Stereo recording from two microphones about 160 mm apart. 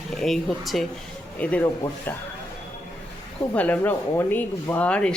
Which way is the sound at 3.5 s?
10° left (ahead or behind).